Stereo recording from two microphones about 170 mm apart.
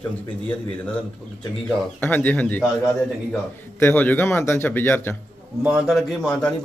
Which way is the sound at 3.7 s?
10° left (ahead or behind).